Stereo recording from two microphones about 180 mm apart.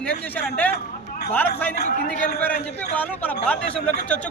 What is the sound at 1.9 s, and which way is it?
Speech, 45° left (ahead or behind).